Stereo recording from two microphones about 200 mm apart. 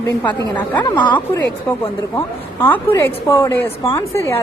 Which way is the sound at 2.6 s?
10° left (ahead or behind).